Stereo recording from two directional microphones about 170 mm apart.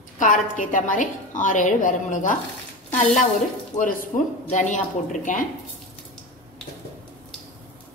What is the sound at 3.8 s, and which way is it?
A woman's voice, 55° left (ahead or behind).